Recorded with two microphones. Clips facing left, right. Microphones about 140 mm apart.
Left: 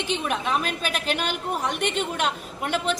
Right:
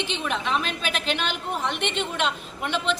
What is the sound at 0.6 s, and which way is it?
Speech, 45° left (ahead or behind).